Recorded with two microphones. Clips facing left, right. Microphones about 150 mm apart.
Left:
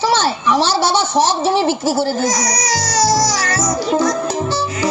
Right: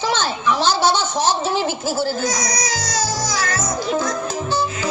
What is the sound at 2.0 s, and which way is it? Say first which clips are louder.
Music: left 4 dB; 40° left (ahead or behind).